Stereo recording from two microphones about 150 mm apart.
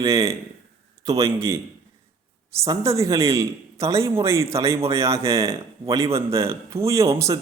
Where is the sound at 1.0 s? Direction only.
20° right (ahead or behind).